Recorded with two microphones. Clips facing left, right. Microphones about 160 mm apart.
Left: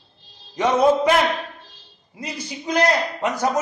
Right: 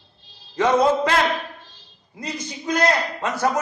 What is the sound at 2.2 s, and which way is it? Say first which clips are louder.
A man's voice: right 1 dB; 10° left (ahead or behind).